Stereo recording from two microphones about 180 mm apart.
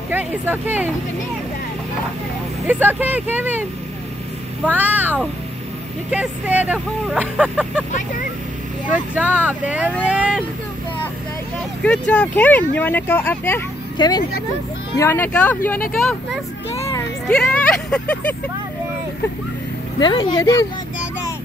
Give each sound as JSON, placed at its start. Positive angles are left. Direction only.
{"t": 0.1, "sound": "speech", "side_deg": -10}
{"t": 2.6, "sound": "speech", "side_deg": -10}
{"t": 4.6, "sound": "speech", "side_deg": -10}
{"t": 8.8, "sound": "speech", "side_deg": -10}
{"t": 11.8, "sound": "speech", "side_deg": 5}
{"t": 13.9, "sound": "speech", "side_deg": 20}
{"t": 15.0, "sound": "speech", "side_deg": 10}
{"t": 17.3, "sound": "speech", "side_deg": 5}
{"t": 20.0, "sound": "speech", "side_deg": 25}